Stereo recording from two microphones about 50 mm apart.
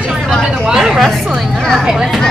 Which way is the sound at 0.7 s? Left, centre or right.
Centre.